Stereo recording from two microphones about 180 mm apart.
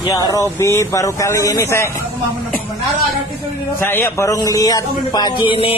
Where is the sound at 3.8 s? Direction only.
15° left (ahead or behind).